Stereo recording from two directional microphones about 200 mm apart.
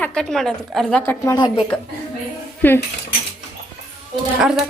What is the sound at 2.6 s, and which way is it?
Speech, 10° left (ahead or behind).